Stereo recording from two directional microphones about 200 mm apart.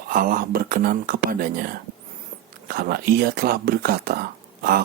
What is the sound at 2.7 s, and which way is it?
Speech, 50° right (ahead or behind).